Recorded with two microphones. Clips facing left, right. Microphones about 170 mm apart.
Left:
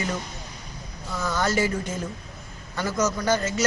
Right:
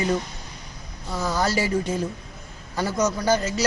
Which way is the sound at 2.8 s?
30° right (ahead or behind).